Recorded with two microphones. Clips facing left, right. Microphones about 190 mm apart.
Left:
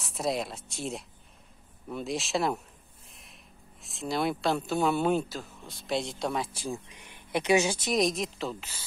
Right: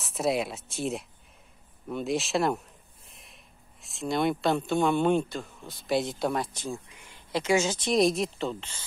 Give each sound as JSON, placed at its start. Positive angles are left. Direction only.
{"t": 0.0, "sound": "speech", "side_deg": 0}
{"t": 3.1, "sound": "a sound", "side_deg": 0}
{"t": 3.8, "sound": "speech", "side_deg": 0}
{"t": 6.7, "sound": "speech", "side_deg": 20}
{"t": 7.9, "sound": "speech", "side_deg": 0}